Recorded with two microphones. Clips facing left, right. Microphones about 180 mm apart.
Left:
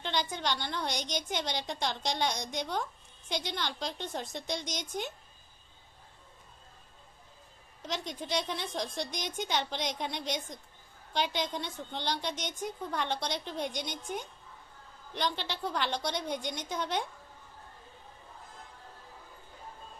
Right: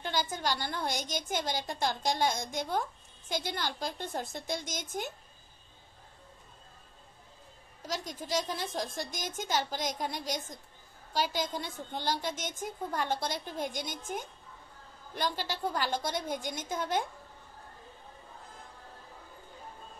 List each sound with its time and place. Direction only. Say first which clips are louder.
0.0 s a woman's voice: even; 5° right (ahead or behind)
4.6 s a woman's voice: left 1 dB; 50° right (ahead or behind)
7.8 s a woman's voice: left 1 dB; centre (ahead or behind)
10.1 s a woman's voice: even; 45° right (ahead or behind)
11.1 s a woman's voice: even; 5° right (ahead or behind)
15.1 s a woman's voice: even; 5° right (ahead or behind)
16.3 s a woman's voice: even; 45° right (ahead or behind)
16.6 s a woman's voice: right 3 dB; 5° right (ahead or behind)